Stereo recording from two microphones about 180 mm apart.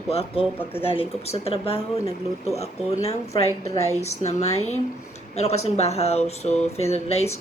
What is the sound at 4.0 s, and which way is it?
Speech, 35° left (ahead or behind).